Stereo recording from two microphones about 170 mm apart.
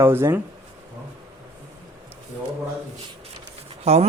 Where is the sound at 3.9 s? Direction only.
40° right (ahead or behind).